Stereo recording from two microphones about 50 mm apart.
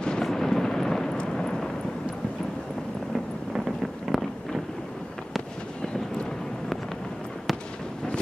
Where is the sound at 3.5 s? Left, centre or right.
Centre.